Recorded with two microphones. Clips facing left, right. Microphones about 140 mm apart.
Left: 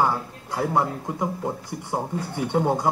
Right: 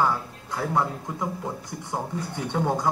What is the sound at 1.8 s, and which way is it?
Speech, 15° left (ahead or behind).